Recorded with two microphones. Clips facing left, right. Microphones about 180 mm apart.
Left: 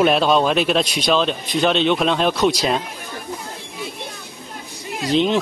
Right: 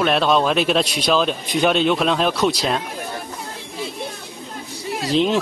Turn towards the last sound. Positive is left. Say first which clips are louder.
# even
turn(degrees=0)  # may be behind; listen again after turning